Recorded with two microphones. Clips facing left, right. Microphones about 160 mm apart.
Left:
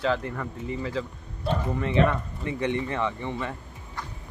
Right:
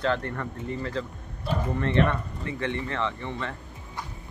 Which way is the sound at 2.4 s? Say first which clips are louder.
Left 5 dB; 15° left (ahead or behind).